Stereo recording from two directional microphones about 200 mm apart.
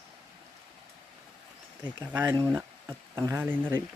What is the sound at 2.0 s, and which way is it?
Speech, 10° right (ahead or behind).